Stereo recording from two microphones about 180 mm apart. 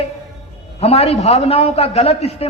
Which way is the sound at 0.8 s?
35° left (ahead or behind).